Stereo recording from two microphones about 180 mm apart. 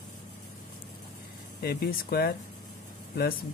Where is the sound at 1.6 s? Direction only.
60° left (ahead or behind).